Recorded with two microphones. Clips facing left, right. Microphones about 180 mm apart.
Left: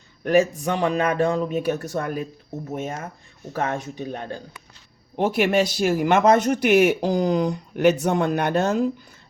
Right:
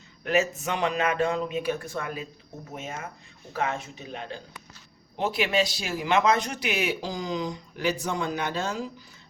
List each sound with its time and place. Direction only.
0.6 s a man's voice: 35° left (ahead or behind); by 8.9 s 55° left (ahead or behind)